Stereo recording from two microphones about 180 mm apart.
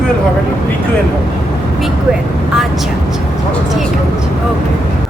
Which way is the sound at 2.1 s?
5° right (ahead or behind).